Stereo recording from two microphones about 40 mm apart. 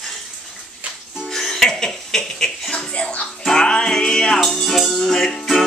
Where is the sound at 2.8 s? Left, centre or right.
Left.